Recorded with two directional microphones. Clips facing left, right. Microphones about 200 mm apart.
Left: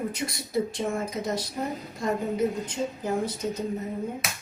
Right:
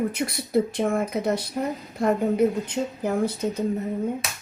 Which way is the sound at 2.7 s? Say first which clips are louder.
Right 3 dB; 60° right (ahead or behind).